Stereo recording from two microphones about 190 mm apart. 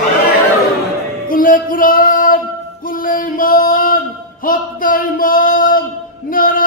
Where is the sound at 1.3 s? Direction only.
45° left (ahead or behind).